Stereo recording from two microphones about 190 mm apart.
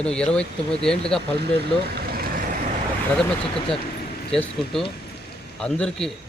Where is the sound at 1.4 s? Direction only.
55° right (ahead or behind).